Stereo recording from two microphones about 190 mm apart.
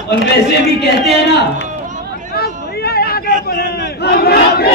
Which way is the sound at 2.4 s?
55° left (ahead or behind).